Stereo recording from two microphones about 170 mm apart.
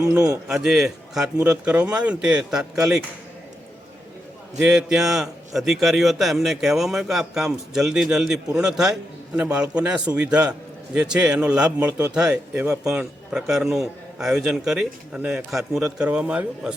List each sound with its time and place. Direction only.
0.0 s speech: 20° right (ahead or behind)
0.4 s a man's voice: 5° right (ahead or behind)
4.6 s a man's voice: 5° right (ahead or behind)